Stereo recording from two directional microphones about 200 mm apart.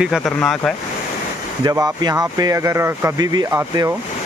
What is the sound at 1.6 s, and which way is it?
Speech, 20° right (ahead or behind).